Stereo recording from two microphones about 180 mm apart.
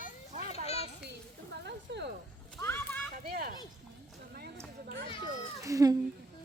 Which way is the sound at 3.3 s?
55° right (ahead or behind).